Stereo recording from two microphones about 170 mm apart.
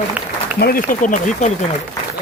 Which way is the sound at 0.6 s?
55° left (ahead or behind).